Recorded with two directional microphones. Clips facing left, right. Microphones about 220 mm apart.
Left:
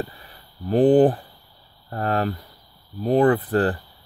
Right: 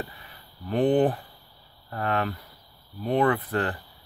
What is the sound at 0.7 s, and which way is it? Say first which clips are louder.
Speech: left 6 dB; 35° left (ahead or behind).